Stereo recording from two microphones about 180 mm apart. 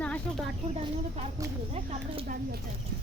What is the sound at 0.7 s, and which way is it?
Speech, 35° right (ahead or behind).